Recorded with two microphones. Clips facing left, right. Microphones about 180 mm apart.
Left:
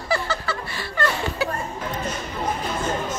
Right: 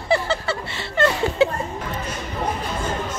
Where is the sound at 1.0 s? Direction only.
25° right (ahead or behind).